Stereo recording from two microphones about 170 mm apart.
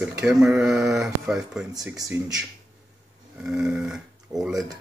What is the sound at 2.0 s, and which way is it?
Speech, 20° right (ahead or behind).